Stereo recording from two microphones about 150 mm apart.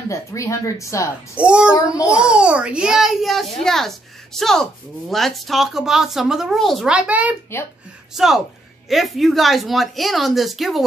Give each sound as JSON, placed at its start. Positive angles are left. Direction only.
{"t": 0.1, "sound": "speech", "side_deg": 20}
{"t": 1.3, "sound": "a child's voice", "side_deg": -5}